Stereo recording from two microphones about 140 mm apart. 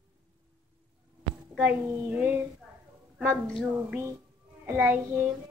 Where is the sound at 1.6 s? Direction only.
10° right (ahead or behind).